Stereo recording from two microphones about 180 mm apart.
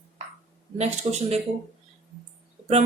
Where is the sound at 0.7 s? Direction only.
35° right (ahead or behind).